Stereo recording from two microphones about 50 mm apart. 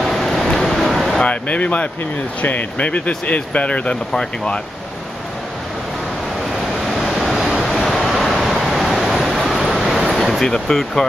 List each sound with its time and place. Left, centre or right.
0.0 s a sound: centre
1.2 s speech: left
4.1 s speech: centre
6.9 s waves: centre
8.6 s a sound: centre
10.4 s speech: centre